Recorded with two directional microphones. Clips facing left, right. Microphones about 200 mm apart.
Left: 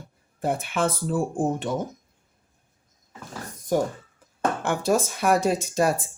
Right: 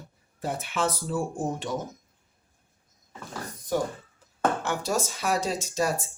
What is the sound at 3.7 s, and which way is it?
Speech, 45° left (ahead or behind).